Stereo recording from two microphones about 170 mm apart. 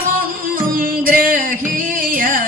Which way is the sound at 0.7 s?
55° right (ahead or behind).